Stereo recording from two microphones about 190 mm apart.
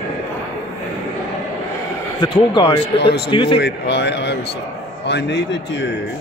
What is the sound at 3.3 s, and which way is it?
Speech, 25° left (ahead or behind).